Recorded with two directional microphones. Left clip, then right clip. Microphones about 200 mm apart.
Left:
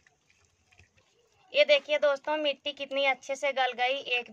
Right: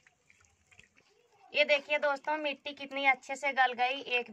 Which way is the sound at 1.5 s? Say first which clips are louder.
Left 5 dB; 40° left (ahead or behind).